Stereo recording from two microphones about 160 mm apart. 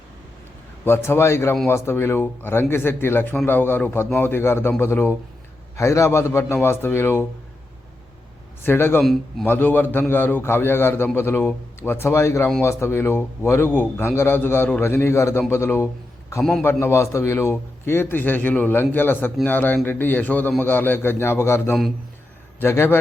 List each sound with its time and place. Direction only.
0.9 s a man's voice: 15° left (ahead or behind)
8.6 s a man's voice: 15° left (ahead or behind)
9.0 s a man's voice: centre (ahead or behind)
9.5 s a man's voice: 10° left (ahead or behind)
16.4 s a man's voice: 5° left (ahead or behind)
16.8 s a man's voice: 15° left (ahead or behind)